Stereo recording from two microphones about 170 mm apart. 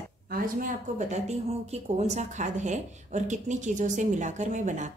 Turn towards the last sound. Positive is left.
turn(degrees=-45)  # may be behind; listen again after turning